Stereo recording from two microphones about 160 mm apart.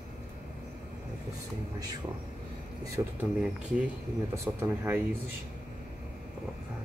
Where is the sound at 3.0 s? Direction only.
20° right (ahead or behind).